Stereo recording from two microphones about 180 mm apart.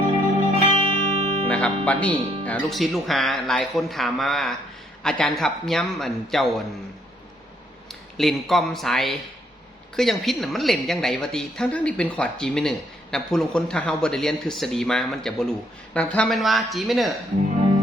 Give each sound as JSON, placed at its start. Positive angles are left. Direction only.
{"t": 0.5, "sound": "music", "side_deg": -35}
{"t": 1.5, "sound": "a woman's voice", "side_deg": 5}
{"t": 8.2, "sound": "a woman's voice", "side_deg": 0}